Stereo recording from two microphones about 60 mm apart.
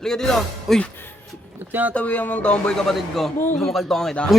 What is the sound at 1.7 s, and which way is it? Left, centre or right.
Speech, right.